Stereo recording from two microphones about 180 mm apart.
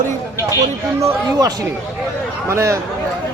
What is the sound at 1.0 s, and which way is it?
Speech, 20° right (ahead or behind).